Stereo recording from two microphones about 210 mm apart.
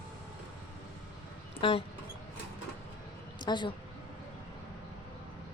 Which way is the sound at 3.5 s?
20° left (ahead or behind).